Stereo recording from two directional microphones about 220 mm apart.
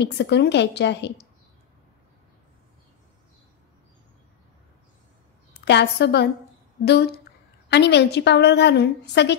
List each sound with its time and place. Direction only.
0.0 s a woman's voice: 50° left (ahead or behind)
5.7 s a woman's voice: 50° left (ahead or behind)